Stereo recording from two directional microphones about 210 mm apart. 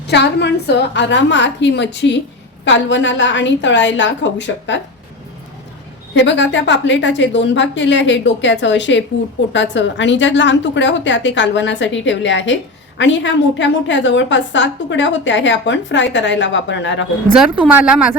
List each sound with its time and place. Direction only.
0.1 s a woman's voice: 55° left (ahead or behind)
6.1 s a woman's voice: 60° left (ahead or behind)
17.3 s a woman's voice: 5° right (ahead or behind)